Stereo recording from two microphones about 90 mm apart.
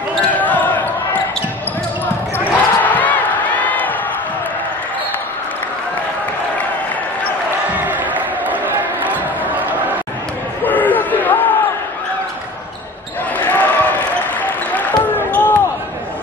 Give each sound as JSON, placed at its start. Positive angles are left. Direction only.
{"t": 0.3, "sound": "basketball bounce", "side_deg": 15}
{"t": 2.3, "sound": "crowd", "side_deg": 20}
{"t": 7.7, "sound": "crowd", "side_deg": -20}
{"t": 10.6, "sound": "a sound", "side_deg": 20}
{"t": 13.4, "sound": "applause", "side_deg": 20}